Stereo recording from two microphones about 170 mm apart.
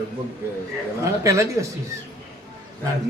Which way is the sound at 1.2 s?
15° right (ahead or behind).